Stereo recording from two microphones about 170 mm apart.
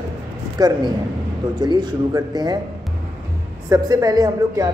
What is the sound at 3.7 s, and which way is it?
A woman's voice, 20° right (ahead or behind).